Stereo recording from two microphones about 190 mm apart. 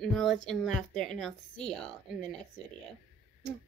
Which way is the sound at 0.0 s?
Centre (ahead or behind).